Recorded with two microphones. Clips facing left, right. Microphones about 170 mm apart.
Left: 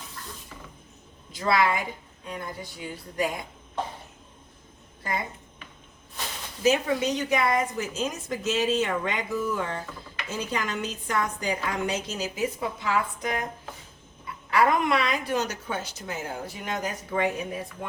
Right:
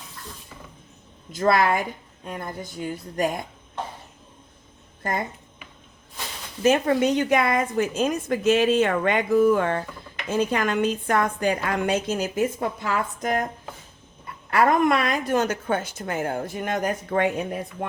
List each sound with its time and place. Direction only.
1.3 s a woman's voice: 50° right (ahead or behind)
5.0 s a woman's voice: 50° right (ahead or behind)
6.6 s a woman's voice: 55° right (ahead or behind)
14.5 s a woman's voice: 50° right (ahead or behind)